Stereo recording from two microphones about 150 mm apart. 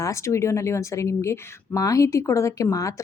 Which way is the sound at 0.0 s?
20° left (ahead or behind).